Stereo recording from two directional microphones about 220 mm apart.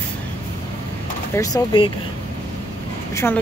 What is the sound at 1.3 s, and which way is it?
Speech, 15° left (ahead or behind).